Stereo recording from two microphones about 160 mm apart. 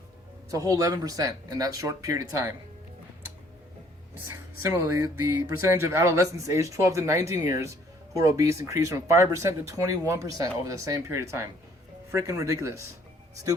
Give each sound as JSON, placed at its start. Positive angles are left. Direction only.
{"t": 0.5, "sound": "speech", "side_deg": -20}
{"t": 4.7, "sound": "speech", "side_deg": -15}